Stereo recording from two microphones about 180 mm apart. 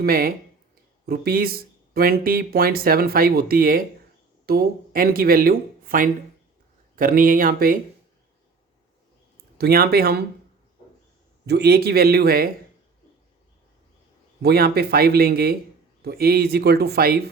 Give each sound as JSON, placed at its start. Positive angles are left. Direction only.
{"t": 0.0, "sound": "speech", "side_deg": -55}
{"t": 9.6, "sound": "speech", "side_deg": -60}
{"t": 11.4, "sound": "speech", "side_deg": -65}
{"t": 14.4, "sound": "speech", "side_deg": -60}